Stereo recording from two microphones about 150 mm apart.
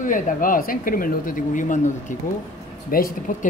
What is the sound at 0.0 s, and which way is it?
Speech, 65° left (ahead or behind).